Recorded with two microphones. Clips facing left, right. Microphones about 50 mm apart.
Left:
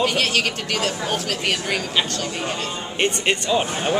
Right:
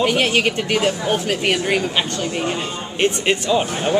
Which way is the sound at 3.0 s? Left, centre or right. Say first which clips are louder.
Right 3 dB; centre.